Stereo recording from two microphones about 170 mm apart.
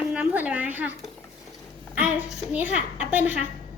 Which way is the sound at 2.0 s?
10° right (ahead or behind).